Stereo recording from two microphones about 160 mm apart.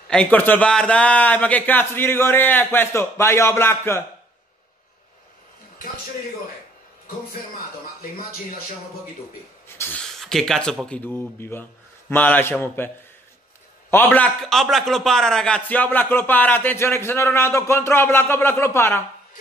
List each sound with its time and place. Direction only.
0.1 s a man's voice: 10° left (ahead or behind)
9.7 s a sound: 15° left (ahead or behind)
10.2 s a man's voice: centre (ahead or behind)